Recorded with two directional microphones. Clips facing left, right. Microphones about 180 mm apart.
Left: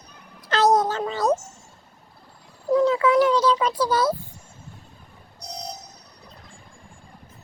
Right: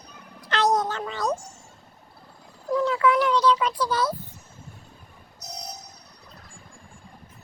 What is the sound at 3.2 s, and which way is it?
Speech, 40° left (ahead or behind).